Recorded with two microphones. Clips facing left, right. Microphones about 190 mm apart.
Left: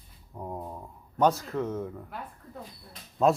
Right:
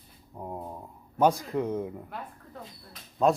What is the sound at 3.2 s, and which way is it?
Speech, centre (ahead or behind).